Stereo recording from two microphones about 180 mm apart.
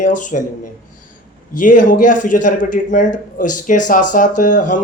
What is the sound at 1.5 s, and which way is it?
Speech, 45° left (ahead or behind).